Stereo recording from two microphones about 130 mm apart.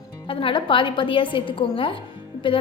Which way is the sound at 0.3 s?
45° left (ahead or behind).